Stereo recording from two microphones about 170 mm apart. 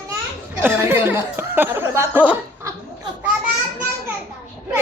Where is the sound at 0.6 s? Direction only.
15° right (ahead or behind).